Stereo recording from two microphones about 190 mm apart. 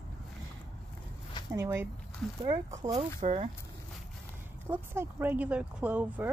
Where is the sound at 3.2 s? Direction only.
35° right (ahead or behind).